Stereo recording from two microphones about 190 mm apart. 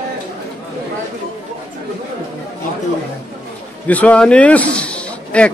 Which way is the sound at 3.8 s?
10° left (ahead or behind).